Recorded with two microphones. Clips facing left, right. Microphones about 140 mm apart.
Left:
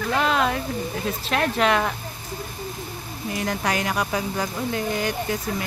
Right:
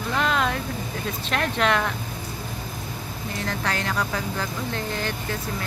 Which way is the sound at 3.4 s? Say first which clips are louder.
Left 3 dB; 15° left (ahead or behind).